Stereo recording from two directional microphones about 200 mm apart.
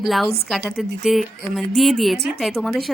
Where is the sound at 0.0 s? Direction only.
Centre (ahead or behind).